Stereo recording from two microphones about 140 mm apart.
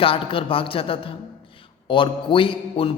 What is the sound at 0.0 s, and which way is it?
A man's voice, 40° left (ahead or behind).